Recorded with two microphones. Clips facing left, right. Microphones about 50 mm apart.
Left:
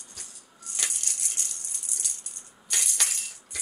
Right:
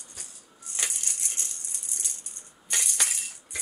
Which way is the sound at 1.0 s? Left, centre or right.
Centre.